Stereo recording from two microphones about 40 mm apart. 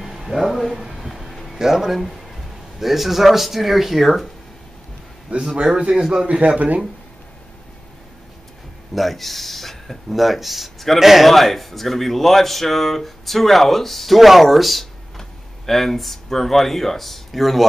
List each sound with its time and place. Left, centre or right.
0.0 s music: centre
0.4 s speech: centre
0.8 s train: centre
1.6 s speech: centre
5.4 s a man's voice: centre
6.4 s speech: right
8.9 s speech: centre